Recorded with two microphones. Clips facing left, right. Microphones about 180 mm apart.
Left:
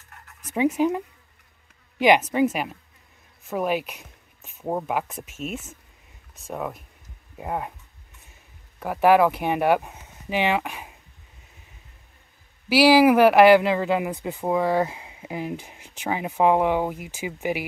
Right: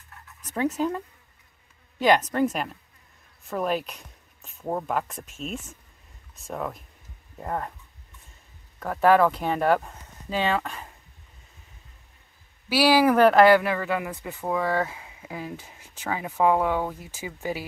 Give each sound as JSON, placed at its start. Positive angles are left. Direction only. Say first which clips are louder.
{"t": 0.5, "sound": "speech", "louder": "left 4 dB", "side_deg": 10}
{"t": 8.7, "sound": "speech", "louder": "left 2 dB", "side_deg": 10}
{"t": 12.6, "sound": "speech", "louder": "left 4 dB", "side_deg": 10}